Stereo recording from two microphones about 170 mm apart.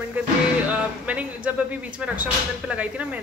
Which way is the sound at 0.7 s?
10° right (ahead or behind).